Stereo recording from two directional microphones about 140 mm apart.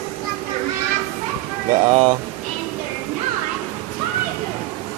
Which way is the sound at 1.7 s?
70° right (ahead or behind).